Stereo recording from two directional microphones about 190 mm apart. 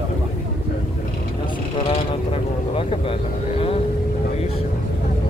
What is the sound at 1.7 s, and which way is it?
Speech, 30° left (ahead or behind).